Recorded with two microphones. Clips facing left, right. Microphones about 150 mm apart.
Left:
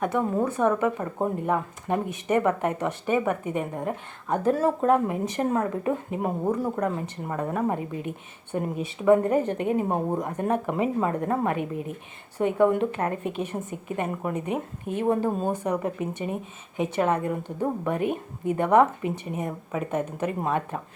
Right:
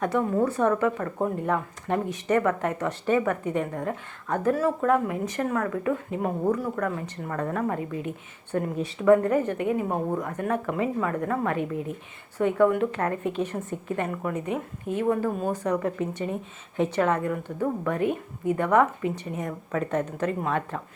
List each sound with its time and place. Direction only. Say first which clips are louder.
0.1 s a woman's voice: right 1 dB; 20° left (ahead or behind)
15.6 s a woman's voice: right 1 dB; 15° left (ahead or behind)